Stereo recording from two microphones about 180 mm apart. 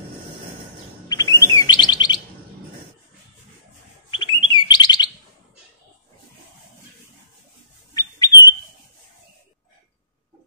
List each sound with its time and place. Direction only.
1.0 s chirp: 20° left (ahead or behind)
4.1 s chirp: 25° left (ahead or behind)
7.9 s squawk: 20° left (ahead or behind)